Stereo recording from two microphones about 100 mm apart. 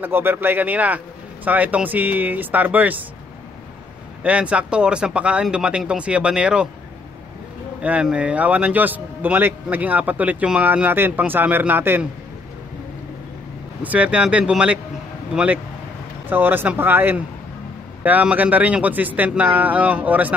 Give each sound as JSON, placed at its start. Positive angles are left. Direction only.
{"t": 0.0, "sound": "a man's voice", "side_deg": -20}
{"t": 4.2, "sound": "a man's voice", "side_deg": -10}
{"t": 7.8, "sound": "a man's voice", "side_deg": -10}
{"t": 13.8, "sound": "a man's voice", "side_deg": -15}